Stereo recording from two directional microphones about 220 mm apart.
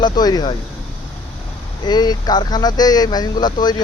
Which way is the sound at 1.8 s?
20° left (ahead or behind).